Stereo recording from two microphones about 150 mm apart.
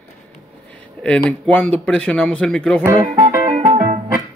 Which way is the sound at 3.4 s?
40° right (ahead or behind).